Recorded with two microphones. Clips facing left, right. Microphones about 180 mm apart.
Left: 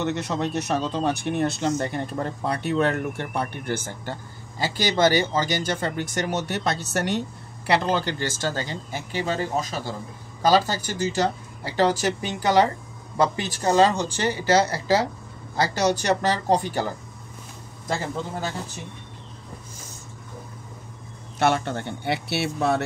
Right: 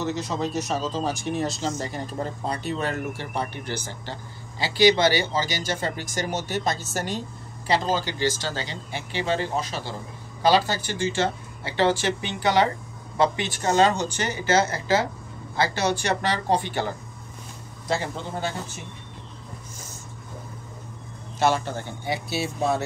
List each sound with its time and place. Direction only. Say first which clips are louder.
0.0 s speech: left 1 dB; 65° left (ahead or behind); by 16.8 s 40° left (ahead or behind)
21.4 s speech: left 1 dB; 60° left (ahead or behind)